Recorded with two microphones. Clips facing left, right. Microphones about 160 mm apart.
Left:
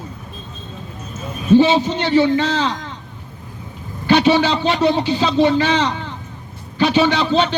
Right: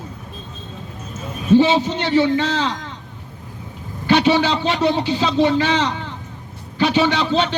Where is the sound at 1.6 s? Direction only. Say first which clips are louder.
Left 2 dB; 35° left (ahead or behind).